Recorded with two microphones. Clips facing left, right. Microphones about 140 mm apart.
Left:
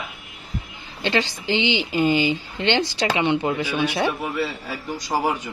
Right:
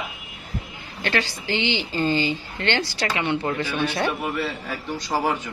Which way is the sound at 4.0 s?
Centre (ahead or behind).